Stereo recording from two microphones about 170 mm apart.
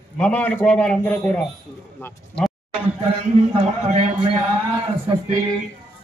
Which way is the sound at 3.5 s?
35° right (ahead or behind).